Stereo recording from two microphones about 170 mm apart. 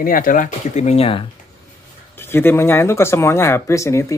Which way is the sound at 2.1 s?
15° left (ahead or behind).